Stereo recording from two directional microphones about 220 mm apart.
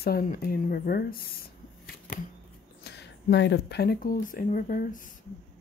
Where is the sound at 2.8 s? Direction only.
50° left (ahead or behind).